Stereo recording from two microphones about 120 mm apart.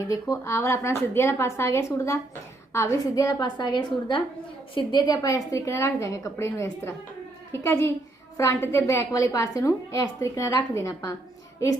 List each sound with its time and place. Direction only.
0.1 s a woman's voice: 25° left (ahead or behind)